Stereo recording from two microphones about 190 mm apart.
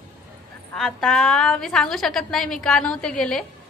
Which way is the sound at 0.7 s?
Centre (ahead or behind).